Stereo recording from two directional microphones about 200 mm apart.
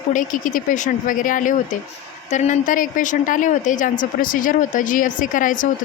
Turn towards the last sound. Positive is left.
turn(degrees=40)  # may be behind; listen again after turning